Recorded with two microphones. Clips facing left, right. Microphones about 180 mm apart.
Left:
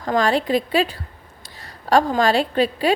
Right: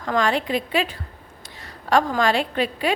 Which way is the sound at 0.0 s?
35° left (ahead or behind).